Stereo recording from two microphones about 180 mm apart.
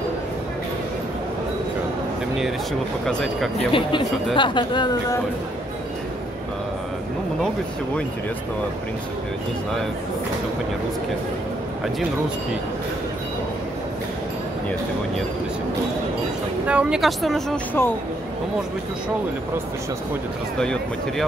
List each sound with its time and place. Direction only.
3.1 s speech: 5° left (ahead or behind)
3.5 s a woman's voice: 30° left (ahead or behind)
16.6 s speech: 5° right (ahead or behind)
17.8 s speech: 10° left (ahead or behind)
20.5 s speech: 5° left (ahead or behind)